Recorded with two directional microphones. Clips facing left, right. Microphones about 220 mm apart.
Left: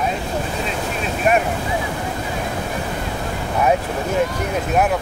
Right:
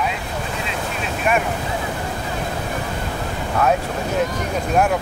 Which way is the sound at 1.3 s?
35° left (ahead or behind).